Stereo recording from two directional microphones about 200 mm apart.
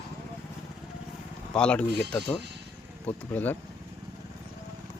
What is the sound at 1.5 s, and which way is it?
Speech, 5° left (ahead or behind).